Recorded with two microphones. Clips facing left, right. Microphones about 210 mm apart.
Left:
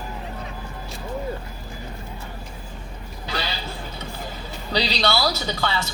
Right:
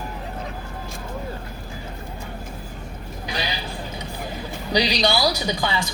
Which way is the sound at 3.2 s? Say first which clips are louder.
Even; 15° right (ahead or behind).